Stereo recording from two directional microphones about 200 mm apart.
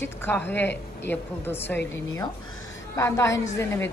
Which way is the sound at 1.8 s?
70° left (ahead or behind).